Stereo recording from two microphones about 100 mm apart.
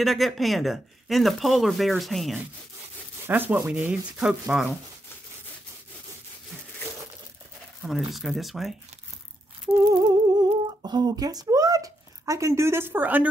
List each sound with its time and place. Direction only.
0.0 s speech: centre (ahead or behind)
3.3 s speech: 20° right (ahead or behind)
4.2 s speech: 5° right (ahead or behind)
7.8 s speech: centre (ahead or behind)
9.7 s humming: 30° right (ahead or behind)
10.0 s speech: 45° right (ahead or behind); by 13.3 s 15° right (ahead or behind)